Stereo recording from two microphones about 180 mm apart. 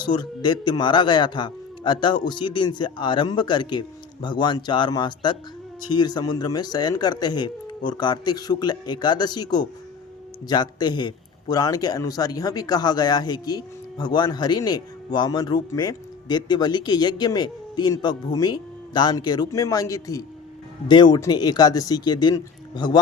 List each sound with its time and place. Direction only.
0.0 s a man's voice: 25° left (ahead or behind)